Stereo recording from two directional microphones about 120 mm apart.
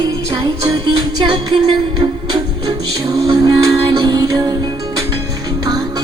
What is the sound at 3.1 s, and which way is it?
Music, 30° right (ahead or behind).